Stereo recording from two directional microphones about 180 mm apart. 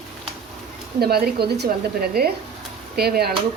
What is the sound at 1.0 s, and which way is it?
Speech, 60° right (ahead or behind).